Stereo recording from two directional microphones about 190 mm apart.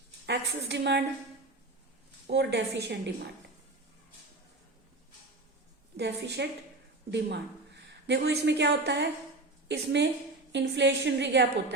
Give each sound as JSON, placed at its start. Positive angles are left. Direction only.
{"t": 0.3, "sound": "a woman's voice", "side_deg": -65}
{"t": 2.2, "sound": "a woman's voice", "side_deg": -60}
{"t": 6.2, "sound": "a woman's voice", "side_deg": -60}